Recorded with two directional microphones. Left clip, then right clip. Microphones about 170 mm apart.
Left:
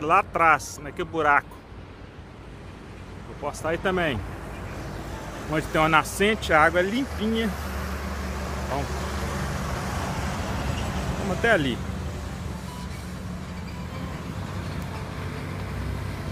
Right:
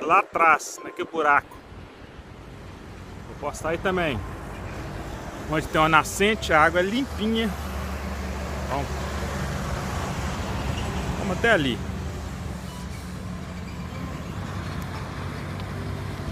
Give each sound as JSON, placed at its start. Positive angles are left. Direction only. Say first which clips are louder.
{"t": 0.0, "sound": "speech", "louder": "right 1 dB", "side_deg": 0}
{"t": 3.4, "sound": "speech", "louder": "even", "side_deg": 0}
{"t": 5.5, "sound": "speech", "louder": "right 1 dB", "side_deg": -5}
{"t": 7.5, "sound": "vehicle", "louder": "left 1 dB", "side_deg": 55}
{"t": 11.4, "sound": "speech", "louder": "right 1 dB", "side_deg": -10}
{"t": 11.7, "sound": "vehicle", "louder": "right 1 dB", "side_deg": 30}
{"t": 13.9, "sound": "vehicle", "louder": "even", "side_deg": 25}